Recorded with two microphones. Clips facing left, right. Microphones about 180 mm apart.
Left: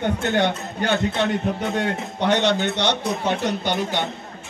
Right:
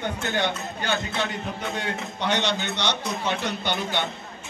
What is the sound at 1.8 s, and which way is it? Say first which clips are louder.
A man's voice: left 6 dB; 55° left (ahead or behind).